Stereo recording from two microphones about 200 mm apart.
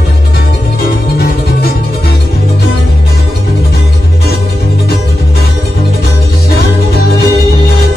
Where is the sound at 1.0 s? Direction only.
50° left (ahead or behind).